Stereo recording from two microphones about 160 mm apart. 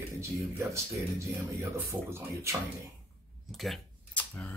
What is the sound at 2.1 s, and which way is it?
Speech, 15° right (ahead or behind).